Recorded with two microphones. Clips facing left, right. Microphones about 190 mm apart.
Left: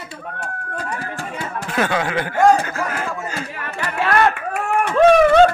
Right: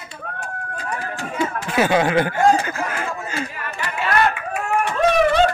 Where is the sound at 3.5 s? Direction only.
55° left (ahead or behind).